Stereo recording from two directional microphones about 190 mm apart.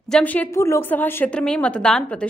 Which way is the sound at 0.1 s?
10° left (ahead or behind).